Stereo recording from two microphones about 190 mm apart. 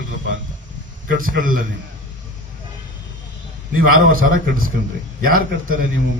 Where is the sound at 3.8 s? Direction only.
50° right (ahead or behind).